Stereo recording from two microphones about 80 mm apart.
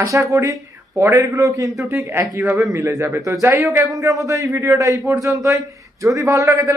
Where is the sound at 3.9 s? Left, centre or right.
Right.